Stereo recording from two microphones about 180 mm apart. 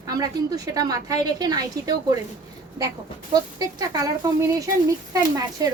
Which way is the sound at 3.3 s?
20° right (ahead or behind).